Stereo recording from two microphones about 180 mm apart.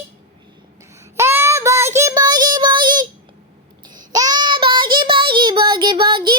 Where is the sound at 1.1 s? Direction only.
15° right (ahead or behind).